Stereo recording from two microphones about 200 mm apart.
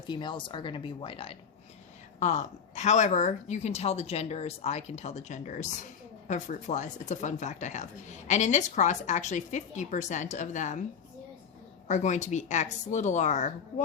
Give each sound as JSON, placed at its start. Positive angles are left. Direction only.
{"t": 0.1, "sound": "speech", "side_deg": 25}
{"t": 11.9, "sound": "speech", "side_deg": 35}